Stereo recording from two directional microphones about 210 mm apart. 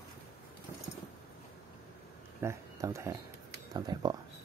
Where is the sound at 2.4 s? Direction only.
15° right (ahead or behind).